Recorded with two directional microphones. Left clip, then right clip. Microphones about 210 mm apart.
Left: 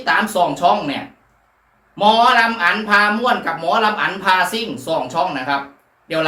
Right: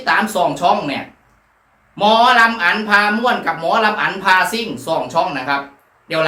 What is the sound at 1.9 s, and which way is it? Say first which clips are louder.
Speech: right 1 dB; 5° right (ahead or behind).